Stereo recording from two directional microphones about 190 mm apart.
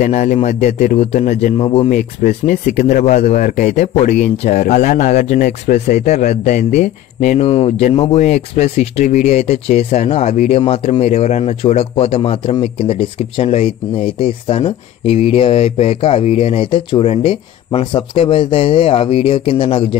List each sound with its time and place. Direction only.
0.0 s a man's voice: 40° left (ahead or behind)